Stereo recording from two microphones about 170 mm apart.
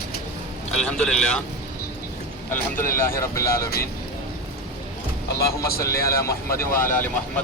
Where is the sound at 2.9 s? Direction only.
15° left (ahead or behind).